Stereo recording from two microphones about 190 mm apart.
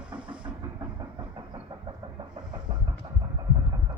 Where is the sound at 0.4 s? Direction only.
20° right (ahead or behind).